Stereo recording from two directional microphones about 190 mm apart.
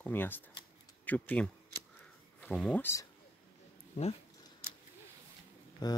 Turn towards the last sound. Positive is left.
turn(degrees=20)  # may be behind; listen again after turning